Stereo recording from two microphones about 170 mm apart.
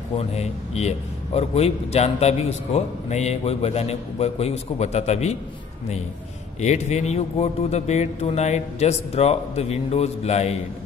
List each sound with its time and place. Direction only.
0.1 s a man's voice: 40° left (ahead or behind)
6.6 s a man's voice: 40° left (ahead or behind)